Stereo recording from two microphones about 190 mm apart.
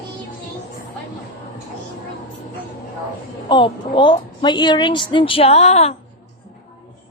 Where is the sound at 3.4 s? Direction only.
25° left (ahead or behind).